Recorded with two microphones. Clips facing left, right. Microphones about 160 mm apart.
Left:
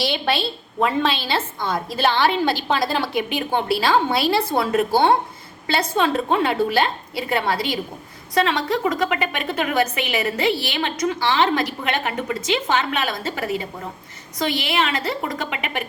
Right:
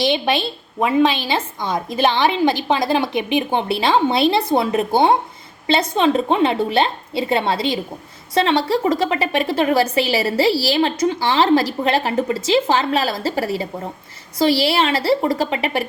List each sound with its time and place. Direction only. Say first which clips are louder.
0.0 s a woman's voice: right 4 dB; 20° right (ahead or behind); by 15.9 s 35° right (ahead or behind)